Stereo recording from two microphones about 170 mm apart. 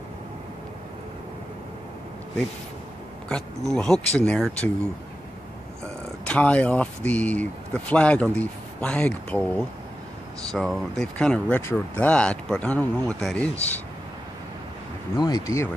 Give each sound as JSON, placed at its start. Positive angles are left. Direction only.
{"t": 3.3, "sound": "speech", "side_deg": 5}
{"t": 6.2, "sound": "speech", "side_deg": 5}
{"t": 15.1, "sound": "speech", "side_deg": 25}